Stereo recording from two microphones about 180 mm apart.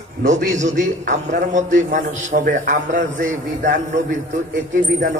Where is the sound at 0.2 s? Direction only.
40° right (ahead or behind).